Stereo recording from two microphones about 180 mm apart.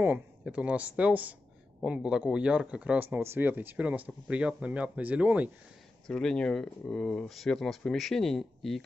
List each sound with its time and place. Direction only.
0.0 s speech: 10° right (ahead or behind)
6.0 s speech: 5° left (ahead or behind)